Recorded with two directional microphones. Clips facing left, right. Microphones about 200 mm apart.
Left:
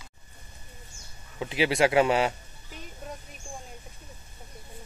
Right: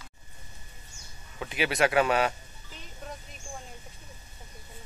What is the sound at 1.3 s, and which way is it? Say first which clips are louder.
A man's voice: left 4 dB; 25° left (ahead or behind).